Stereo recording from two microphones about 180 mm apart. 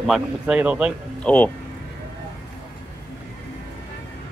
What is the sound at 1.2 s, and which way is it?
Speech, 10° left (ahead or behind).